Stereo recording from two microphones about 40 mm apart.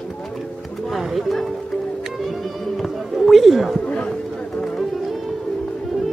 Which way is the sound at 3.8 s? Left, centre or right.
Left.